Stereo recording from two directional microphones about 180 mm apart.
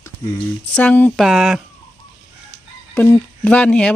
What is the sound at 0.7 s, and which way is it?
Speech, 5° left (ahead or behind).